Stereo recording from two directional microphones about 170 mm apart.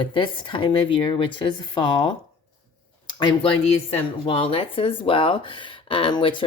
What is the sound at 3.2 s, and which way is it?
Speech, 25° left (ahead or behind).